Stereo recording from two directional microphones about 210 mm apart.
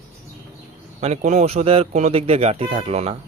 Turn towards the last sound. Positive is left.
turn(degrees=-30)  # may be behind; listen again after turning